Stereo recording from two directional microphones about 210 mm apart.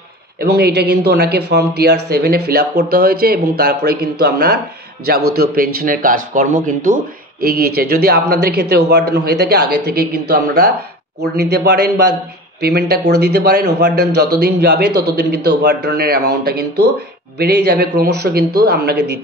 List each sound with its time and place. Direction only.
0.4 s speech: 50° right (ahead or behind)